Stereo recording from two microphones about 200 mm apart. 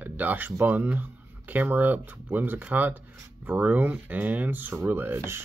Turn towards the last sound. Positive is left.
turn(degrees=-10)  # may be behind; listen again after turning